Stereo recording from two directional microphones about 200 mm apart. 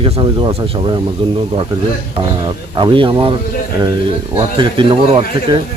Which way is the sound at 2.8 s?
25° right (ahead or behind).